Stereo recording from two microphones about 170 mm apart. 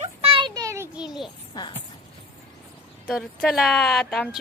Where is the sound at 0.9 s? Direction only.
Centre (ahead or behind).